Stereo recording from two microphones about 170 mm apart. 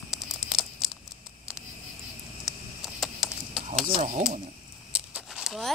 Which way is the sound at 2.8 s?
Centre (ahead or behind).